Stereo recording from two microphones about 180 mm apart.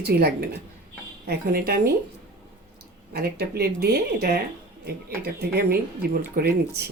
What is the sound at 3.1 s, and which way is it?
Speech, 60° right (ahead or behind).